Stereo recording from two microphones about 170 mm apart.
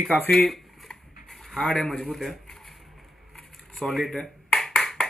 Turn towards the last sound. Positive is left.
turn(degrees=0)  # may be behind; listen again after turning